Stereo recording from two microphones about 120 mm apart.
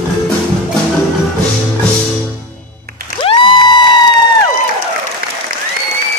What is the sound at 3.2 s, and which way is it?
Music, 50° left (ahead or behind).